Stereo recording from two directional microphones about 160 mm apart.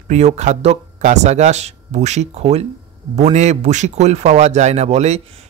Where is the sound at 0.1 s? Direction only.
45° right (ahead or behind).